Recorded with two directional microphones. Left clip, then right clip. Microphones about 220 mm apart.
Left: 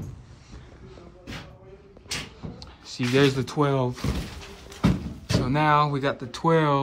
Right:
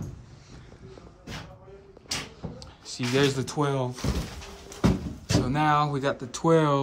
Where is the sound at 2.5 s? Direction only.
10° right (ahead or behind).